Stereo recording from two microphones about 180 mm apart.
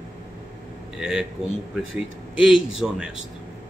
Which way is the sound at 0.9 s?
5° right (ahead or behind).